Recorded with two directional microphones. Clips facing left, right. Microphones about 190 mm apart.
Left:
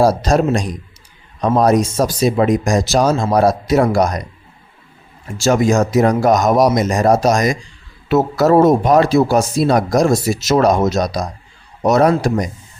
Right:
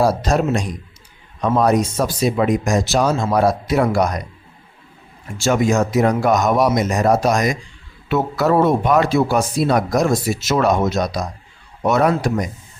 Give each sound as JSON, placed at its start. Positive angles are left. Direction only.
{"t": 0.0, "sound": "a man's voice", "side_deg": 40}
{"t": 5.4, "sound": "speech", "side_deg": 40}